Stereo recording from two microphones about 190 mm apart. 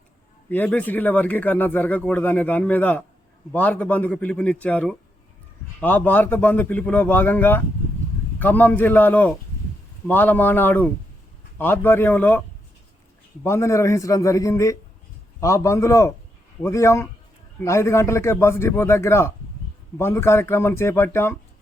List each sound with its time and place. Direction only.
0.5 s a man's voice: 5° left (ahead or behind)
13.4 s a man's voice: 15° left (ahead or behind)